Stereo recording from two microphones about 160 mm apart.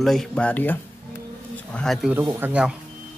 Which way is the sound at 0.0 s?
Centre (ahead or behind).